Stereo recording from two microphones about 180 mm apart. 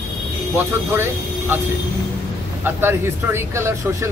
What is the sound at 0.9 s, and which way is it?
Speech, 10° right (ahead or behind).